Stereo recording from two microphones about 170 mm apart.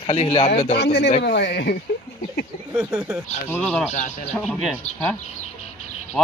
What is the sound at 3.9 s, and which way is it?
Speech, 45° left (ahead or behind).